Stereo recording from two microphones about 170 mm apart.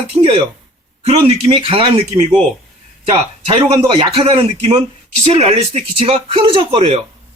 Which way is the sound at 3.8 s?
35° right (ahead or behind).